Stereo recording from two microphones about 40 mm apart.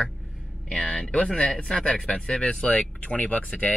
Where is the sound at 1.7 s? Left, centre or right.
Centre.